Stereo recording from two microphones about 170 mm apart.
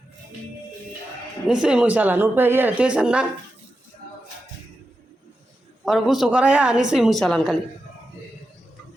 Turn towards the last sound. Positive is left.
turn(degrees=0)  # may be behind; listen again after turning